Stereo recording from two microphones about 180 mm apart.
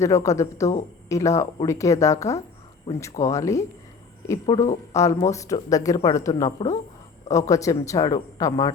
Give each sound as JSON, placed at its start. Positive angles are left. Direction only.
{"t": 0.0, "sound": "speech", "side_deg": 15}
{"t": 4.6, "sound": "speech", "side_deg": 40}
{"t": 4.9, "sound": "speech", "side_deg": 15}